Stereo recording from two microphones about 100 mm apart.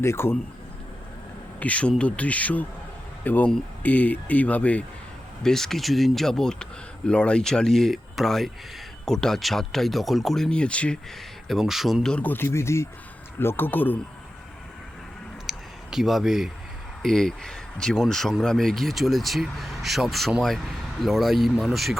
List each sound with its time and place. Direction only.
0.0 s speech: 25° left (ahead or behind)
1.5 s speech: 15° left (ahead or behind)
11.4 s speech: 5° right (ahead or behind)
12.1 s speech: 15° left (ahead or behind)
15.4 s a sound: 5° right (ahead or behind)
17.0 s speech: 5° left (ahead or behind)